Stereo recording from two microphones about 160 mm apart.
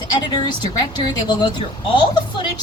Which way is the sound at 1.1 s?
30° left (ahead or behind).